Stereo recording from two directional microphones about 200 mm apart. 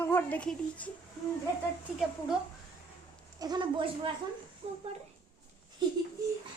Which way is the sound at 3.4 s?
20° right (ahead or behind).